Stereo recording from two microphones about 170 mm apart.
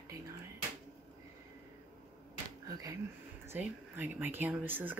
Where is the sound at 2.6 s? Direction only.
20° right (ahead or behind).